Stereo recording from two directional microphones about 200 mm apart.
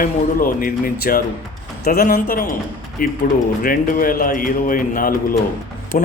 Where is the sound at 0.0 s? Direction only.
45° left (ahead or behind).